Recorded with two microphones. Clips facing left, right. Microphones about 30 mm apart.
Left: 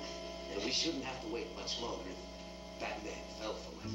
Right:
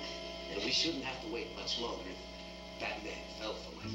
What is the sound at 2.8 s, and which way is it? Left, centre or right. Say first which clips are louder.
A man's voice: right 1 dB; right.